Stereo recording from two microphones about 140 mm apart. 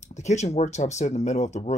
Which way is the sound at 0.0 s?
55° left (ahead or behind).